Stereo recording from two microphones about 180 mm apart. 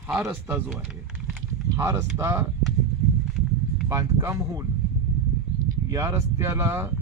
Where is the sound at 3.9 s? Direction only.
20° right (ahead or behind).